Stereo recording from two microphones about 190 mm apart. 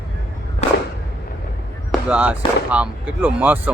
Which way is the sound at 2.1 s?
5° right (ahead or behind).